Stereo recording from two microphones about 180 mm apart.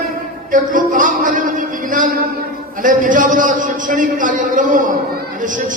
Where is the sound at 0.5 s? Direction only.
45° right (ahead or behind).